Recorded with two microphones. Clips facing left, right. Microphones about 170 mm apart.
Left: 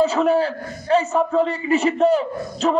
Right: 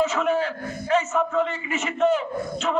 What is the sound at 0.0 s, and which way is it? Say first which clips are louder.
A man's voice: left 5 dB; 35° left (ahead or behind).